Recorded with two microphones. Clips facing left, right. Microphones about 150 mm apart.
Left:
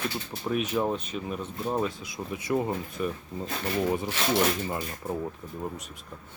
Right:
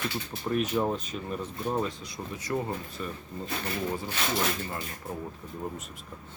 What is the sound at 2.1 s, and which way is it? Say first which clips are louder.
Speech: left 4 dB; 20° left (ahead or behind).